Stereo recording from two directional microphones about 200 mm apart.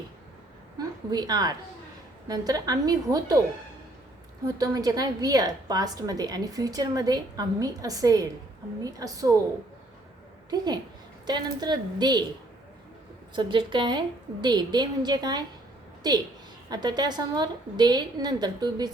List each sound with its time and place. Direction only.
0.8 s a woman's voice: 20° right (ahead or behind)
4.4 s a woman's voice: 20° right (ahead or behind)
11.3 s a woman's voice: 20° right (ahead or behind)
13.3 s a woman's voice: 25° right (ahead or behind)